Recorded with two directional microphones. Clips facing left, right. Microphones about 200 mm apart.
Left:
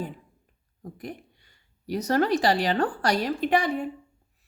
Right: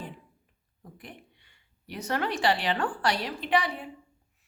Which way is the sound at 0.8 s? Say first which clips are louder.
Left 9 dB; 40° left (ahead or behind).